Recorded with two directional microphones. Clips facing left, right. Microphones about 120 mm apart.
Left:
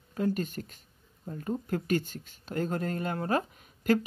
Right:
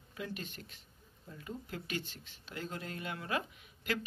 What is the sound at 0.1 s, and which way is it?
Speech, 45° left (ahead or behind).